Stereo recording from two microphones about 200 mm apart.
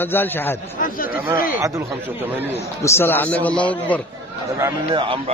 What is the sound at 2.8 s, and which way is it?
A man's voice, 10° left (ahead or behind).